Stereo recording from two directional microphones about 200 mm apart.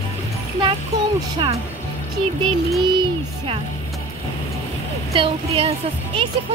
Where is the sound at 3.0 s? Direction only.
30° right (ahead or behind).